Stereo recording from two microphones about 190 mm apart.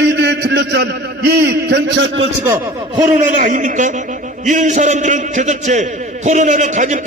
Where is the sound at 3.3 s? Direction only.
40° right (ahead or behind).